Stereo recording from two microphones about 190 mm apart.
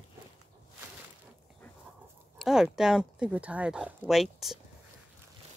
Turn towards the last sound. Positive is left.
turn(degrees=0)  # may be behind; listen again after turning